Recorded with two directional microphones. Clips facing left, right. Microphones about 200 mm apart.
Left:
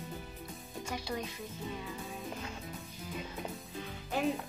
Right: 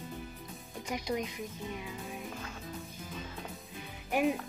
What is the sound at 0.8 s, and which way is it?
Speech, 15° right (ahead or behind).